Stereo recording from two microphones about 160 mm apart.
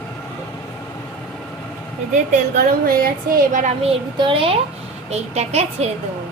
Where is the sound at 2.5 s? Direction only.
65° right (ahead or behind).